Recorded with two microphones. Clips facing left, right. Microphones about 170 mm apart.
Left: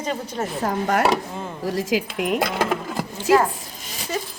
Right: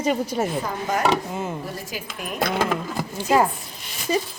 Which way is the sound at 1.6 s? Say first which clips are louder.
Left 10 dB; 90° left.